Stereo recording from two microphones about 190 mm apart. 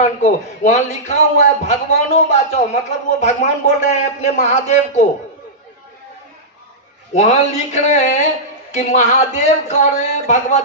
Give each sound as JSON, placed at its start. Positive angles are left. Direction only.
{"t": 0.0, "sound": "a man's voice", "side_deg": 40}
{"t": 7.2, "sound": "a man's voice", "side_deg": 35}